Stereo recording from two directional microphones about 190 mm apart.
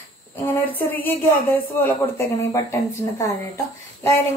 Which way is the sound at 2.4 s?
15° left (ahead or behind).